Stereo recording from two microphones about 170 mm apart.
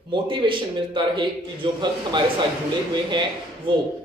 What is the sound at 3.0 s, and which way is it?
Speech, 25° right (ahead or behind).